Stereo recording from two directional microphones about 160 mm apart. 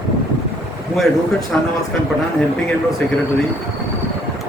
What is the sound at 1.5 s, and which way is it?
Speech, 5° left (ahead or behind).